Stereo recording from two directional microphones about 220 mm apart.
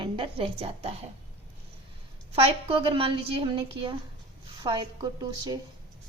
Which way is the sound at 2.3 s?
25° right (ahead or behind).